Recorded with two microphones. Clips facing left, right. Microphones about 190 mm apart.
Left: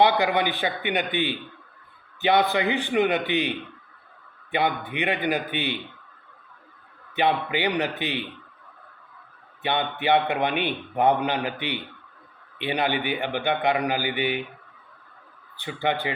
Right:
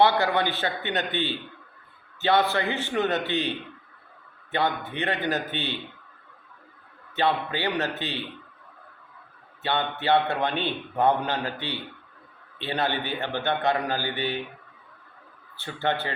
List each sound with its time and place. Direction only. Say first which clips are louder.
0.0 s a man's voice: left 1 dB; 15° left (ahead or behind)
7.2 s a man's voice: left 2 dB; 15° left (ahead or behind)
9.6 s a man's voice: left 1 dB; 15° left (ahead or behind)
15.5 s a man's voice: left 1 dB; 15° left (ahead or behind)